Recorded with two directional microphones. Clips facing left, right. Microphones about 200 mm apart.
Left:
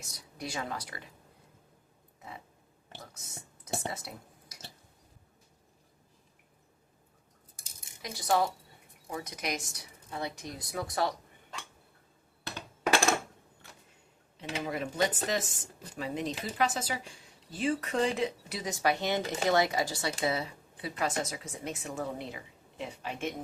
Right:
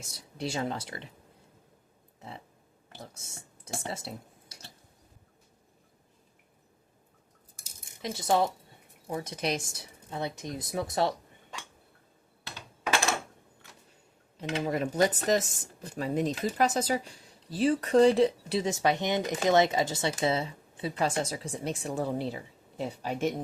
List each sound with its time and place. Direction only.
0.0 s speech: 30° right (ahead or behind)
3.0 s speech: 30° right (ahead or behind)
3.8 s a sound: 30° right (ahead or behind)
8.0 s speech: 25° right (ahead or behind)
14.3 s speech: 35° right (ahead or behind)